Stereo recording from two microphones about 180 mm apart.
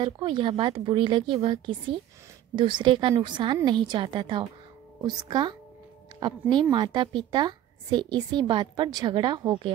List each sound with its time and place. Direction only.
0.0 s speech: 25° right (ahead or behind)